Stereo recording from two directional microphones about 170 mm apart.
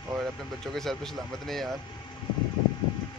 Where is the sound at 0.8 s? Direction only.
Centre (ahead or behind).